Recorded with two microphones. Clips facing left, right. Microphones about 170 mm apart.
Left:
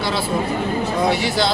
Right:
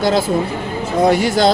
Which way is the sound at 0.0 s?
45° right (ahead or behind).